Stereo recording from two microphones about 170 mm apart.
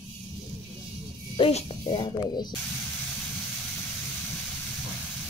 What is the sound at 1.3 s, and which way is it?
Speech, 35° left (ahead or behind).